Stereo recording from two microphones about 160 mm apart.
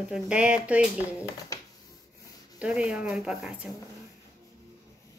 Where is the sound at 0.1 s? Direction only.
5° right (ahead or behind).